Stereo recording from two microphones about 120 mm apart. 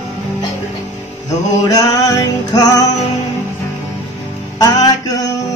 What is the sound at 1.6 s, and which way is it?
Music, 30° left (ahead or behind).